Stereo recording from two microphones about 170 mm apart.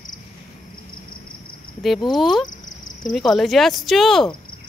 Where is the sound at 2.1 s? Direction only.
Centre (ahead or behind).